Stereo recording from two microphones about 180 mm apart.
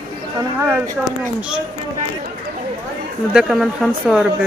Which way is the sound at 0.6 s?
10° right (ahead or behind).